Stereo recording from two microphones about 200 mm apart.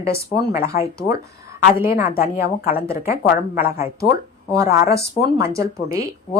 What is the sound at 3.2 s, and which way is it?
Speech, 45° left (ahead or behind).